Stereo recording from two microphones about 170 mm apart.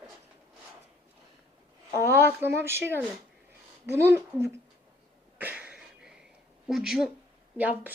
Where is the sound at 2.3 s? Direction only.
10° right (ahead or behind).